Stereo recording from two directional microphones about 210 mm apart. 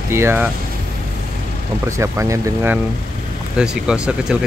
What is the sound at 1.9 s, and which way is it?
Speech, 15° right (ahead or behind).